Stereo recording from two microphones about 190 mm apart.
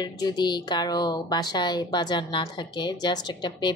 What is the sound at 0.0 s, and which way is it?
A woman's voice, 20° left (ahead or behind).